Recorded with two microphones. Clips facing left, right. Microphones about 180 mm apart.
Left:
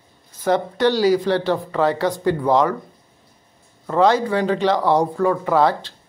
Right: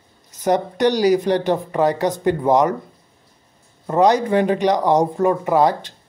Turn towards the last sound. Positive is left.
turn(degrees=-15)  # may be behind; listen again after turning